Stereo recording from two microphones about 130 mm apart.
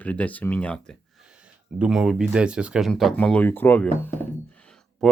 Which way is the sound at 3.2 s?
10° left (ahead or behind).